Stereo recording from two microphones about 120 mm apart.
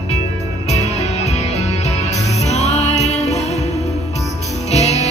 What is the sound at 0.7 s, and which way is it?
Music, 65° left (ahead or behind).